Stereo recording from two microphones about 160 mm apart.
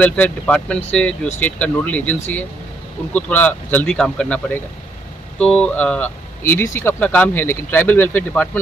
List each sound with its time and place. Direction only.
0.0 s speech: 10° left (ahead or behind)
5.4 s speech: 5° left (ahead or behind)